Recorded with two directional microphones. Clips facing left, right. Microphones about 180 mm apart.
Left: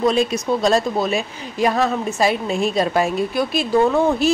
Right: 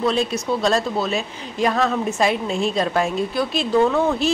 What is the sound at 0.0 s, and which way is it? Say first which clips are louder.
A woman's voice: left 3 dB; 10° left (ahead or behind).